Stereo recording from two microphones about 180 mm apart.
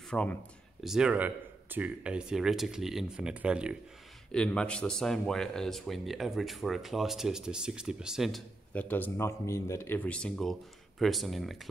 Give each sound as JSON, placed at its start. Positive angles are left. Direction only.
{"t": 0.1, "sound": "speech", "side_deg": 5}
{"t": 4.3, "sound": "speech", "side_deg": 5}